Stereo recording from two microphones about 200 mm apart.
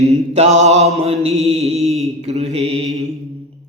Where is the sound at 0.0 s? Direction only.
35° right (ahead or behind).